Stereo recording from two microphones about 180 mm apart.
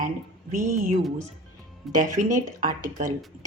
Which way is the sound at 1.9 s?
45° right (ahead or behind).